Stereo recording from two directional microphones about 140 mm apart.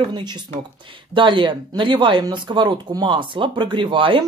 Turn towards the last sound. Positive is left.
turn(degrees=-35)  # may be behind; listen again after turning